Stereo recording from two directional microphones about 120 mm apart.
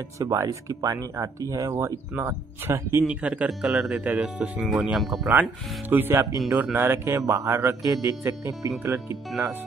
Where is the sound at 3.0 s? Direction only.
10° right (ahead or behind).